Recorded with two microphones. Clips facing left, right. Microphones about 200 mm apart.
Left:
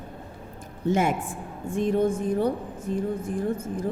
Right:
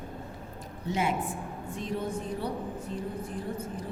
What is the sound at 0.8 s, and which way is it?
A woman's voice, 50° left (ahead or behind).